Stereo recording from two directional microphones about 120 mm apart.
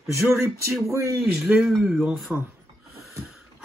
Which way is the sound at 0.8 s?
25° right (ahead or behind).